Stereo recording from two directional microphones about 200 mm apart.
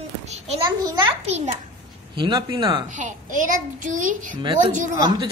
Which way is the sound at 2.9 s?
40° right (ahead or behind).